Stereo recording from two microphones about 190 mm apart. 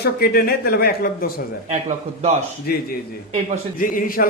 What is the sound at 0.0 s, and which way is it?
Speech, 55° left (ahead or behind).